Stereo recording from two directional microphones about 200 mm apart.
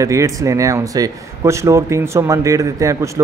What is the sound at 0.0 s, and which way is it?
Speech, 15° right (ahead or behind).